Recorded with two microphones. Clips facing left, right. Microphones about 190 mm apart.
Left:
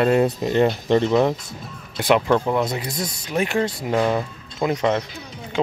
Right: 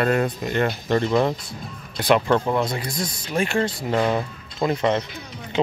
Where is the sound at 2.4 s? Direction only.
Centre (ahead or behind).